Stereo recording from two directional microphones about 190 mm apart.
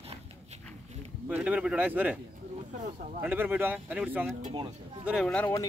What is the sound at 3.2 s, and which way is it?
Speech, 10° right (ahead or behind).